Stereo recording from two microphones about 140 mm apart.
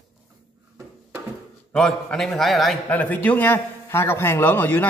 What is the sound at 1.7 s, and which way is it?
Speech, 5° left (ahead or behind).